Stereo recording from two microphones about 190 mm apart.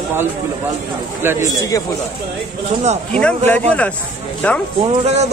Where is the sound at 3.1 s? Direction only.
5° left (ahead or behind).